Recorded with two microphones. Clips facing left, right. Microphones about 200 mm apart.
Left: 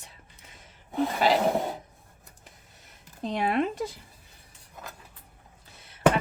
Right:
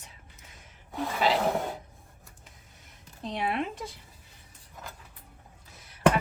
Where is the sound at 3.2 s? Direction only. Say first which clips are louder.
Left 5 dB; 40° left (ahead or behind).